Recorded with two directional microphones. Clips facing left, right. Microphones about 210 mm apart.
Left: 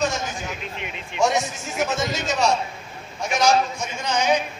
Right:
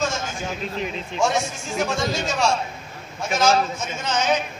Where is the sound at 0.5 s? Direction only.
35° right (ahead or behind).